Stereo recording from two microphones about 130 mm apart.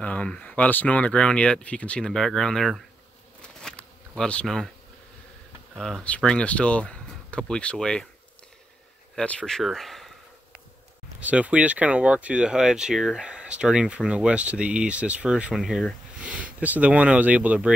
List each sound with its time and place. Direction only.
0.0 s speech: 10° left (ahead or behind)
3.6 s a sound: 5° left (ahead or behind)
5.8 s speech: 5° left (ahead or behind)
9.1 s speech: 10° left (ahead or behind)
11.1 s speech: 10° right (ahead or behind)